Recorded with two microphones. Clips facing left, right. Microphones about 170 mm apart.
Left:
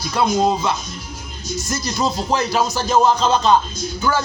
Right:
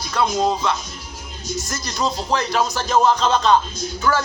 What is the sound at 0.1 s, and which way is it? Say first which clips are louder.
Speech: left 2 dB; 10° left (ahead or behind).